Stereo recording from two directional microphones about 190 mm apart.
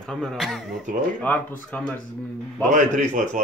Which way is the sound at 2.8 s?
40° right (ahead or behind).